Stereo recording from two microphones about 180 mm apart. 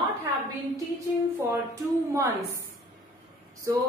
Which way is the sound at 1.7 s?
15° right (ahead or behind).